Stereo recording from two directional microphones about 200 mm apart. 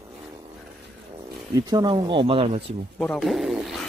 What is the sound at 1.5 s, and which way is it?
Speech, 20° right (ahead or behind).